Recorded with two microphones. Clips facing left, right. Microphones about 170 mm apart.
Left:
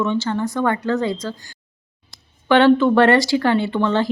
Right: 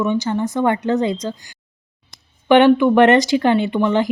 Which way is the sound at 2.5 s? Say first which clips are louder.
Right 2 dB; 15° right (ahead or behind).